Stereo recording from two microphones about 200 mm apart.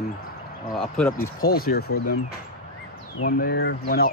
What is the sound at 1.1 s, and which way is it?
Speech, 50° left (ahead or behind).